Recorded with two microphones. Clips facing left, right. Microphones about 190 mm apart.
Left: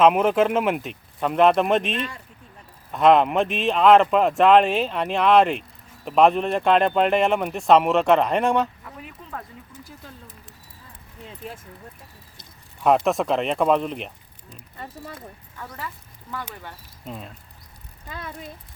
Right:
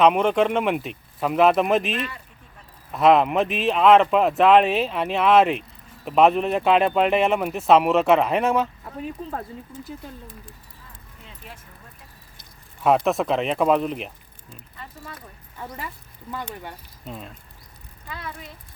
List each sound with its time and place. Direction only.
0.0 s speech: 5° left (ahead or behind)
8.8 s speech: 30° right (ahead or behind)
12.8 s speech: centre (ahead or behind)
15.5 s speech: 15° right (ahead or behind)
17.1 s speech: centre (ahead or behind)